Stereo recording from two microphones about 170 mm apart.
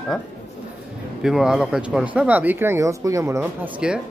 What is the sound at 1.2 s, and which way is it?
Speech, 5° right (ahead or behind).